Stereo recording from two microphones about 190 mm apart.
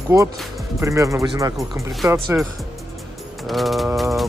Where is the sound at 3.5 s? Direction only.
Centre (ahead or behind).